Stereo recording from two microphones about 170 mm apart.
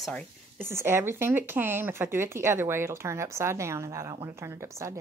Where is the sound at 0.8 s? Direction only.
15° right (ahead or behind).